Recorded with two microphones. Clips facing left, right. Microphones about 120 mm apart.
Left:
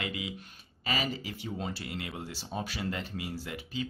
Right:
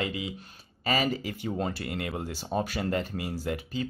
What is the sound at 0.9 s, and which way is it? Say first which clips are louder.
Speech: right 6 dB; 45° right (ahead or behind).